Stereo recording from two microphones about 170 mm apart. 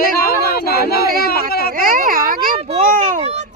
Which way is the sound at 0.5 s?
65° left (ahead or behind).